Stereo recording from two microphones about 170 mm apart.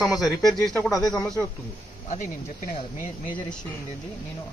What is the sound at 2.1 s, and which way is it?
Speech, 55° left (ahead or behind).